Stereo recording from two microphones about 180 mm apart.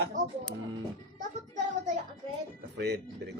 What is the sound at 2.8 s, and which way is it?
Speech, 70° right (ahead or behind).